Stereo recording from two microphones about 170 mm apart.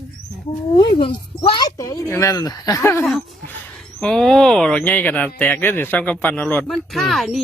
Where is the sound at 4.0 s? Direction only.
5° left (ahead or behind).